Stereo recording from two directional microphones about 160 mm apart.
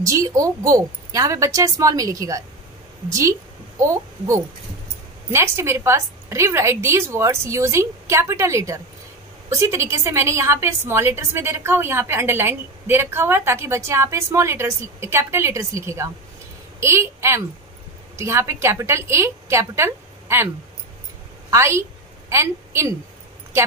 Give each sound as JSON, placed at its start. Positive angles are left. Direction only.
{"t": 0.0, "sound": "a woman's voice", "side_deg": -20}
{"t": 5.3, "sound": "a woman's voice", "side_deg": -15}
{"t": 21.5, "sound": "a woman's voice", "side_deg": -15}